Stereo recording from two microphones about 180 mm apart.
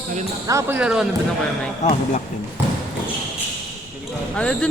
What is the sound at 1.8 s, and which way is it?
Speech, 40° left (ahead or behind).